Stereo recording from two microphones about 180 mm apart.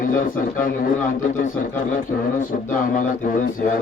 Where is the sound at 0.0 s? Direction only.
50° left (ahead or behind).